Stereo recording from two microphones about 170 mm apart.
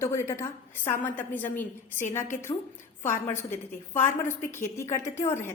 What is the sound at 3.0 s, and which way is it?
A woman's voice, 15° left (ahead or behind).